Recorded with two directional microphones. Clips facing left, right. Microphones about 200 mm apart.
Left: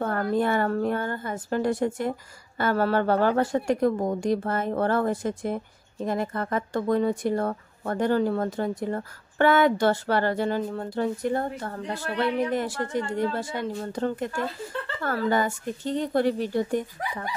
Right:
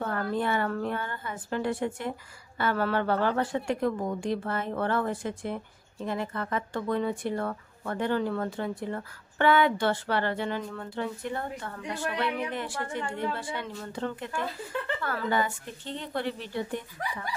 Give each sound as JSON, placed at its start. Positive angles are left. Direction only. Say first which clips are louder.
{"t": 0.0, "sound": "a woman's voice", "louder": "left 5 dB", "side_deg": 40}